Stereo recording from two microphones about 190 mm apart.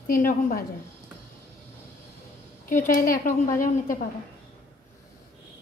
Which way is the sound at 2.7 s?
45° left (ahead or behind).